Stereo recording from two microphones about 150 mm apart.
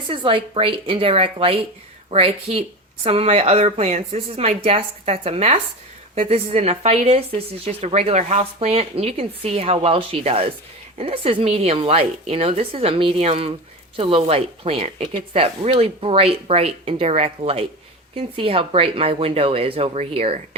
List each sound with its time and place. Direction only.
0.1 s speech: 35° right (ahead or behind)